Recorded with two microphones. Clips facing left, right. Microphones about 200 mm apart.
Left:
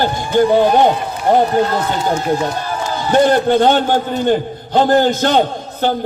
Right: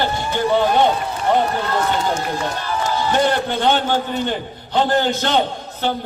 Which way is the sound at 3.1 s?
45° left (ahead or behind).